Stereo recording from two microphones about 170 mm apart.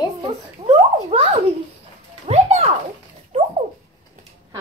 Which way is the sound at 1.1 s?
35° right (ahead or behind).